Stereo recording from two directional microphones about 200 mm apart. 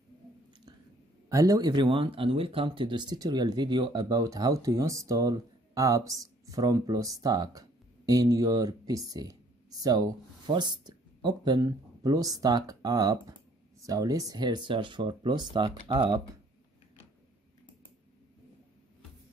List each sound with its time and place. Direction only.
1.3 s speech: 15° right (ahead or behind)